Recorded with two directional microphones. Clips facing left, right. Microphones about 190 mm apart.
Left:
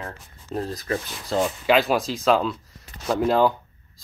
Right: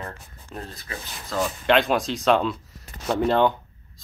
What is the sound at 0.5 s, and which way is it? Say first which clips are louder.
Speech: left 9 dB; 35° left (ahead or behind).